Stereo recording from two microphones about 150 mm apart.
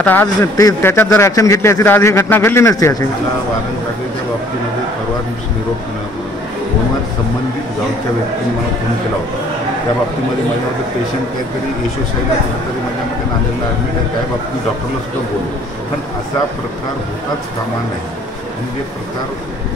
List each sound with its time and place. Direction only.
0.0 s a man's voice: 15° left (ahead or behind)